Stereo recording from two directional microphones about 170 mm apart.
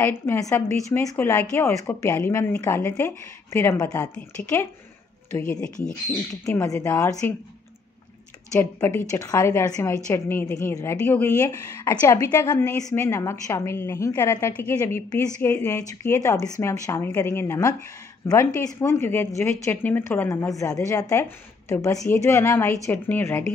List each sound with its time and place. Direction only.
0.0 s a woman's voice: 15° left (ahead or behind)
6.4 s a woman's voice: 15° left (ahead or behind)
8.5 s a woman's voice: 15° left (ahead or behind)